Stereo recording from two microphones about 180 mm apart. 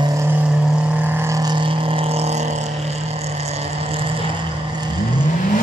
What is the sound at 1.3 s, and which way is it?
Vehicle, 25° right (ahead or behind).